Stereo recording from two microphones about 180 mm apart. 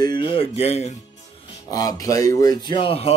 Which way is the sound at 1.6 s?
20° left (ahead or behind).